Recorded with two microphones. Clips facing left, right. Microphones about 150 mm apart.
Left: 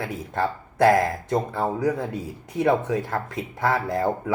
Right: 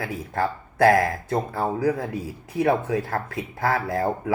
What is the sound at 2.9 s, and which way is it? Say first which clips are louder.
Speech: even; 25° left (ahead or behind).